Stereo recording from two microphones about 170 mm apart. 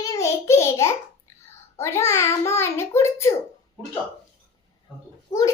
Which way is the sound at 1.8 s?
15° left (ahead or behind).